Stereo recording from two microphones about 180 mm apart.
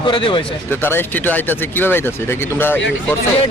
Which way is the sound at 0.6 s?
10° left (ahead or behind).